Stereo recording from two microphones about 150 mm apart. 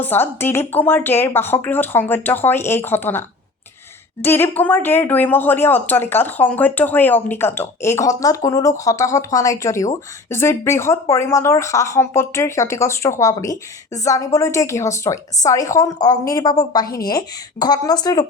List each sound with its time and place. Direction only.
0.0 s speech: 15° left (ahead or behind)